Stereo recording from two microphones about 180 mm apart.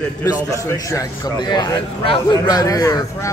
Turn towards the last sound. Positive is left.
turn(degrees=20)  # may be behind; listen again after turning